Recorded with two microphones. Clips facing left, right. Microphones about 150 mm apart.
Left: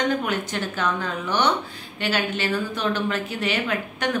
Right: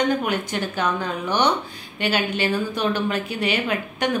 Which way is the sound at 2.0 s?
15° right (ahead or behind).